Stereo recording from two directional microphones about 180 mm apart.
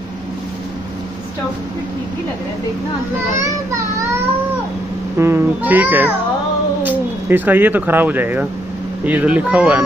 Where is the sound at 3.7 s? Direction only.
15° right (ahead or behind).